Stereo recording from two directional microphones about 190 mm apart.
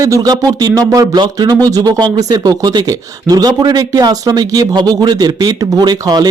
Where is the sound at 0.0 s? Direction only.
20° right (ahead or behind).